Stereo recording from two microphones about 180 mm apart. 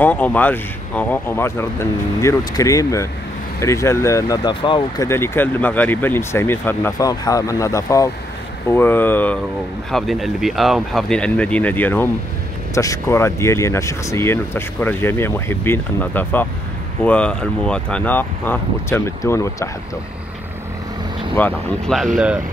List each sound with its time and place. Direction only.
0.0 s speech: 10° left (ahead or behind); by 5.0 s 25° left (ahead or behind)
5.0 s speech: 15° left (ahead or behind)
21.4 s speech: 10° left (ahead or behind)